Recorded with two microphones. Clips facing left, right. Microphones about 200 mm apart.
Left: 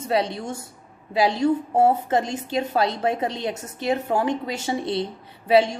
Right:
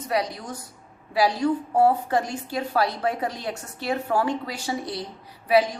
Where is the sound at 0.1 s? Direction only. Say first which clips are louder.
Left 3 dB; 25° left (ahead or behind).